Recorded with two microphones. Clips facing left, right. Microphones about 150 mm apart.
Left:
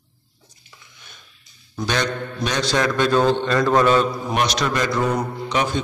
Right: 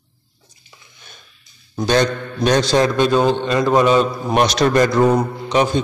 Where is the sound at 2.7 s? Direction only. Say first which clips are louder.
Right 5 dB; 30° right (ahead or behind).